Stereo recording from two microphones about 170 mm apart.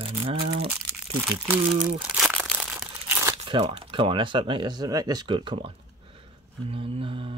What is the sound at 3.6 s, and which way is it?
Speech, 35° right (ahead or behind).